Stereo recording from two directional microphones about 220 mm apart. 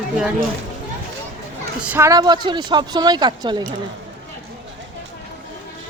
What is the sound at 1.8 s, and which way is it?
Speech, 10° right (ahead or behind).